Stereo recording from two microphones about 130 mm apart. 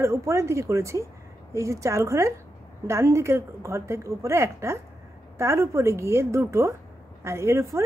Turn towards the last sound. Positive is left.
turn(degrees=-20)  # may be behind; listen again after turning